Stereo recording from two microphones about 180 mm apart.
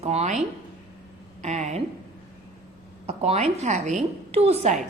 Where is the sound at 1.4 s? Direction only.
40° right (ahead or behind).